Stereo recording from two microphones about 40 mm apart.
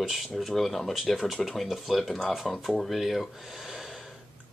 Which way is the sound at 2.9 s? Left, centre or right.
Centre.